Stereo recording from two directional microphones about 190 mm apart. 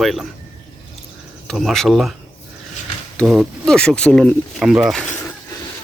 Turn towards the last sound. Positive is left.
turn(degrees=0)  # may be behind; listen again after turning